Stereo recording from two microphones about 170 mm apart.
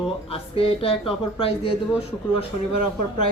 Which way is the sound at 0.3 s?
35° left (ahead or behind).